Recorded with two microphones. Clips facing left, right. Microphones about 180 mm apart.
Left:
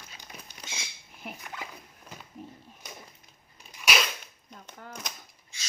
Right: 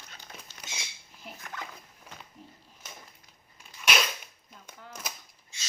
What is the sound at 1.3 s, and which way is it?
Dog, 60° left (ahead or behind).